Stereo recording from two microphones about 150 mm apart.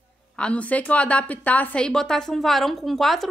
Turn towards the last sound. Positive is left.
turn(degrees=0)  # may be behind; listen again after turning